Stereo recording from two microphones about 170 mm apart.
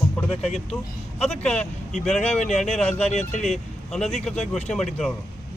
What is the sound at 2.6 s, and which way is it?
Speech, 40° left (ahead or behind).